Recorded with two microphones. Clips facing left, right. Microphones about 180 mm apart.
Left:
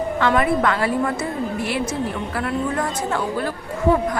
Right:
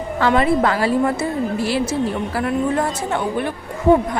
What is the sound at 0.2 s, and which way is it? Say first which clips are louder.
A woman's voice: right 3 dB; 30° right (ahead or behind).